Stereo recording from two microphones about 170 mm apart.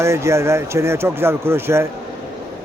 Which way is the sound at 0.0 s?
15° right (ahead or behind).